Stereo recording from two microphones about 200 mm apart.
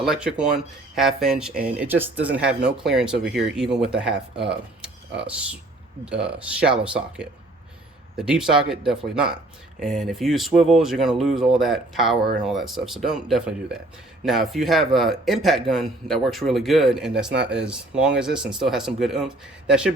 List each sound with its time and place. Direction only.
0.0 s a man's voice: 5° right (ahead or behind)
6.1 s a man's voice: 5° right (ahead or behind)
17.3 s speech: 60° right (ahead or behind)
17.7 s a man's voice: 5° right (ahead or behind)